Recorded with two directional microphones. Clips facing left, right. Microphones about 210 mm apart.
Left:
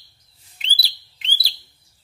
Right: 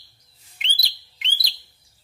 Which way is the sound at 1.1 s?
35° left (ahead or behind).